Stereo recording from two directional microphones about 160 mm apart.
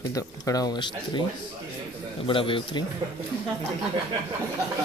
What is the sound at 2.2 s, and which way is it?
Speech, 35° left (ahead or behind).